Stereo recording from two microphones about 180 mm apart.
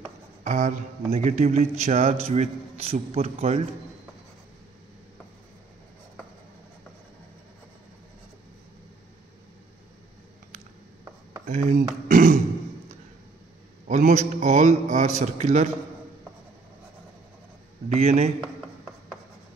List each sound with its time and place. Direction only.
0.4 s speech: 40° right (ahead or behind)
11.4 s speech: 45° right (ahead or behind)
13.8 s speech: 45° right (ahead or behind)
17.8 s speech: 35° right (ahead or behind)